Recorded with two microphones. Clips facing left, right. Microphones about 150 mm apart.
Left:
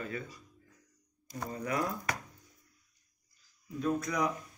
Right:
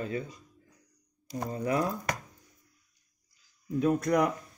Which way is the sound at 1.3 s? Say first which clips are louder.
Right 5 dB; 30° right (ahead or behind).